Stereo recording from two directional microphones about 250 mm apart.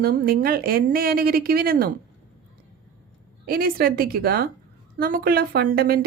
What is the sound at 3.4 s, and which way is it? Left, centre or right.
A woman's voice, right.